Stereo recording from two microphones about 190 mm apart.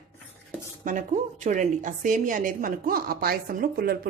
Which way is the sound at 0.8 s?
40° right (ahead or behind).